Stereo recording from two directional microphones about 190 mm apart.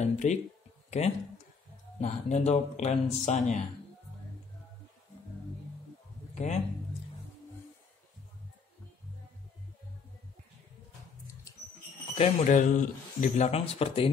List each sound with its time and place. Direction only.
0.0 s a sound: 35° left (ahead or behind)
0.8 s speech: 35° left (ahead or behind)
6.3 s speech: 40° left (ahead or behind)
12.2 s speech: 40° left (ahead or behind)